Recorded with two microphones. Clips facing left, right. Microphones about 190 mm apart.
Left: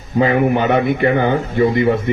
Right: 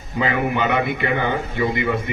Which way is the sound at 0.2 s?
45° left (ahead or behind).